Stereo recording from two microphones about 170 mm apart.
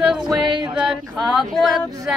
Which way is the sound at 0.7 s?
5° right (ahead or behind).